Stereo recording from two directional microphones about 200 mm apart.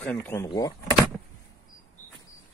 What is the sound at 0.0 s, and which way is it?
Speech, 5° left (ahead or behind).